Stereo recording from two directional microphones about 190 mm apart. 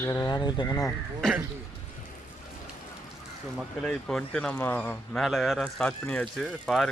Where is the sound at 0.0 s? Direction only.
20° left (ahead or behind).